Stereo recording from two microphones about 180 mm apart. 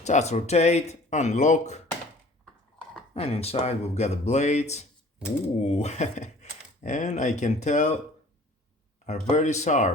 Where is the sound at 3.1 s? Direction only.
35° left (ahead or behind).